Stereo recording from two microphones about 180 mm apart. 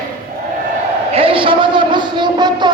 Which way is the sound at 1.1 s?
30° right (ahead or behind).